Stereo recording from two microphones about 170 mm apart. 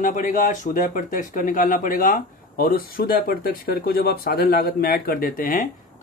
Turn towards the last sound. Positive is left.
turn(degrees=55)  # may be behind; listen again after turning